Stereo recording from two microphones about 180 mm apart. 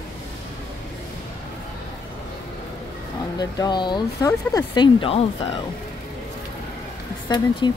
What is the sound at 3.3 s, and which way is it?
Speech, 20° left (ahead or behind).